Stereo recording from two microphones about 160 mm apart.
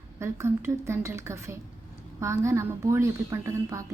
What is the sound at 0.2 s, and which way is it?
A woman's voice, 15° right (ahead or behind).